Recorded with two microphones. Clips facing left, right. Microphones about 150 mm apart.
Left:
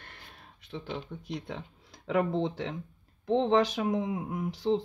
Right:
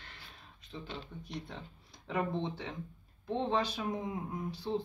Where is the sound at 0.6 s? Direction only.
80° left.